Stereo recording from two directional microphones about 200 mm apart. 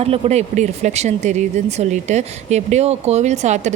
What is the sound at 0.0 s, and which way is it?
Speech, 30° right (ahead or behind).